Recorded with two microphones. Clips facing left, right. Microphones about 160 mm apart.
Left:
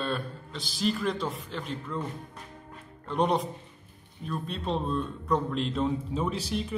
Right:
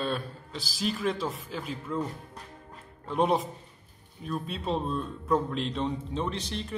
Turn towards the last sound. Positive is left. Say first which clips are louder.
# left 3 dB
turn(degrees=5)  # may be behind; listen again after turning